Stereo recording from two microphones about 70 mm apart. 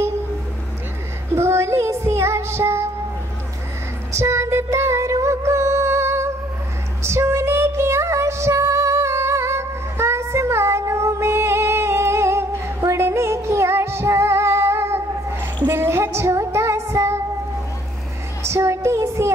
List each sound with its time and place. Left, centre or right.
1.3 s child singing: right
4.1 s music: right
18.4 s child singing: right